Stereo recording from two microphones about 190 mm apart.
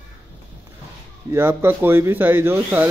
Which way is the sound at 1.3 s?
10° right (ahead or behind).